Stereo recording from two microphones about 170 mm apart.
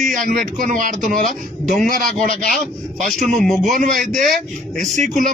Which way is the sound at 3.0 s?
Centre (ahead or behind).